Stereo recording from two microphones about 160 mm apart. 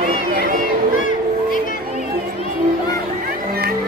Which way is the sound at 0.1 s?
70° right (ahead or behind).